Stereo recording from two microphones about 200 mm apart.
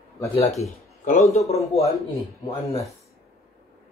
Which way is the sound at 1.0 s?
35° left (ahead or behind).